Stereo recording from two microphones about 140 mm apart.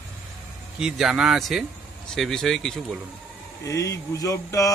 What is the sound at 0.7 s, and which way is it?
Speech, 5° right (ahead or behind).